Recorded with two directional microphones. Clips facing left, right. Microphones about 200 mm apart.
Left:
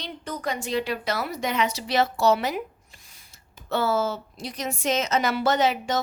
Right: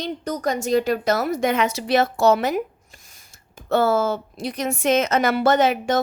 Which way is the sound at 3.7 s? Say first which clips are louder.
Right 5 dB; 50° right (ahead or behind).